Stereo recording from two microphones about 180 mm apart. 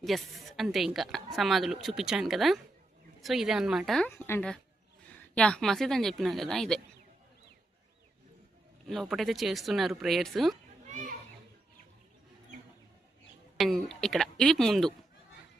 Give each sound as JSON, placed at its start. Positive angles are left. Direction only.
{"t": 0.0, "sound": "a woman's voice", "side_deg": 0}
{"t": 8.9, "sound": "a woman's voice", "side_deg": 0}
{"t": 10.8, "sound": "children playing", "side_deg": -45}
{"t": 13.6, "sound": "a woman's voice", "side_deg": 0}